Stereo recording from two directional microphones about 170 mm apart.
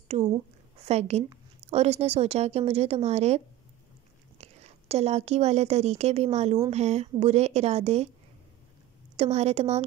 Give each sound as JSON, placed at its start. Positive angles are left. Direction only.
{"t": 0.8, "sound": "a woman's voice", "side_deg": -40}
{"t": 9.1, "sound": "a woman's voice", "side_deg": -40}